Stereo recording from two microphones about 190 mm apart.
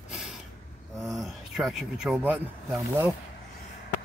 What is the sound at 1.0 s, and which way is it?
Speech, centre (ahead or behind).